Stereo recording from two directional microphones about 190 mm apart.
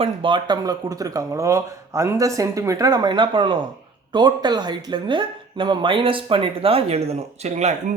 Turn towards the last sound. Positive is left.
turn(degrees=-35)  # may be behind; listen again after turning